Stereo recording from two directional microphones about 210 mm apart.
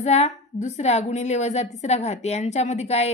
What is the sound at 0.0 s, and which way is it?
A woman's voice, 30° left (ahead or behind).